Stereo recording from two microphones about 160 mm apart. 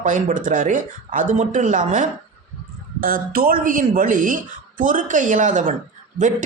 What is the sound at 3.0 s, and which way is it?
Speech, 65° right (ahead or behind).